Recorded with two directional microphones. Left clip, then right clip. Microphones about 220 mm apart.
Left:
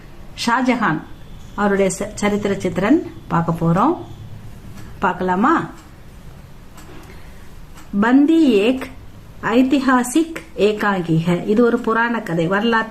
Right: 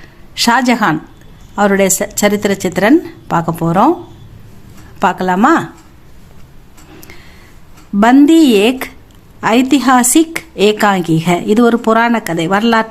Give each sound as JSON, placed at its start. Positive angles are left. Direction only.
{"t": 0.3, "sound": "a woman's voice", "side_deg": -50}
{"t": 4.9, "sound": "a woman's voice", "side_deg": -50}
{"t": 7.9, "sound": "a woman's voice", "side_deg": -50}